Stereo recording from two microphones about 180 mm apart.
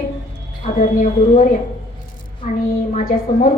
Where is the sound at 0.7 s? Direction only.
45° left (ahead or behind).